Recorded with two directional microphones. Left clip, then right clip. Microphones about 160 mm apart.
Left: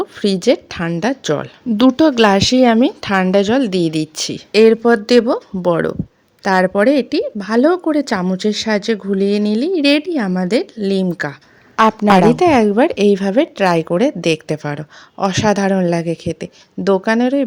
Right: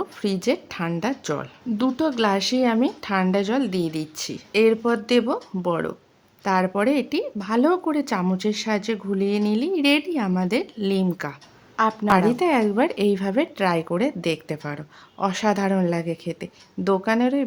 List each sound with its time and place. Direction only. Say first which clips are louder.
0.0 s a woman's voice: left 9 dB; 35° left (ahead or behind)
11.8 s a woman's voice: left 8 dB; 45° left (ahead or behind)